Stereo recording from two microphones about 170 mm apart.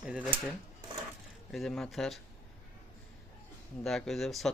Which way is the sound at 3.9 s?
Centre (ahead or behind).